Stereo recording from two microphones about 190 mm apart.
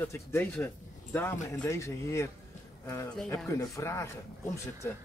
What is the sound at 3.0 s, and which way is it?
Speech, 5° left (ahead or behind).